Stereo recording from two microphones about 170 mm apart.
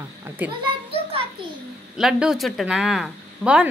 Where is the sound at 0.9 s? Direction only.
35° right (ahead or behind).